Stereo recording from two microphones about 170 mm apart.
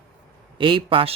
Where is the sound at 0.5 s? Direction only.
30° right (ahead or behind).